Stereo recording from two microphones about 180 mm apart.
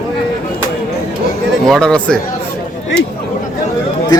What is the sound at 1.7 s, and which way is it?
Speech, 5° left (ahead or behind).